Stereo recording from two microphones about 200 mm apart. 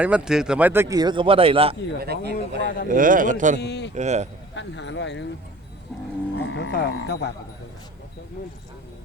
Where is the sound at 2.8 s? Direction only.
45° right (ahead or behind).